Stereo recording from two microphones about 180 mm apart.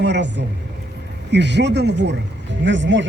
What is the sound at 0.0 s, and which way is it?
Speech, 75° right (ahead or behind).